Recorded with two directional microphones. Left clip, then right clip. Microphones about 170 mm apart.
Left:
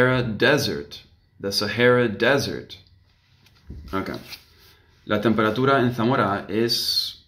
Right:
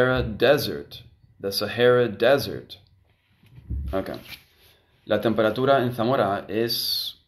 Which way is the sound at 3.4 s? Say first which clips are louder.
Left 3 dB; 20° right (ahead or behind).